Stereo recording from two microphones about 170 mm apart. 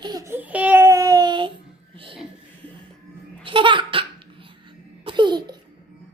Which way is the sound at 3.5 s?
30° right (ahead or behind).